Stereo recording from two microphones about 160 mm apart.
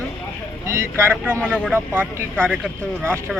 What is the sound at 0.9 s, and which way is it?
Speech, 15° right (ahead or behind).